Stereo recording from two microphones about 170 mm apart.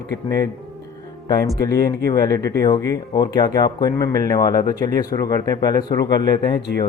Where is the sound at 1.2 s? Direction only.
20° left (ahead or behind).